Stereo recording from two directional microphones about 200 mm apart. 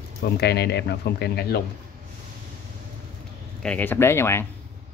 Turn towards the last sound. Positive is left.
turn(degrees=10)  # may be behind; listen again after turning